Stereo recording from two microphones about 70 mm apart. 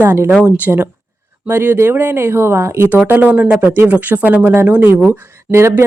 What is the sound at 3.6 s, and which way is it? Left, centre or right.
Speech, right.